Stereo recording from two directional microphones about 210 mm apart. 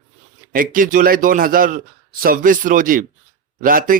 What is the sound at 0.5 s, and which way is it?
A man's voice, 40° right (ahead or behind).